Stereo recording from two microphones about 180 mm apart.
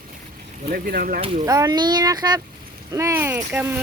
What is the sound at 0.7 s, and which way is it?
Speech, 55° right (ahead or behind).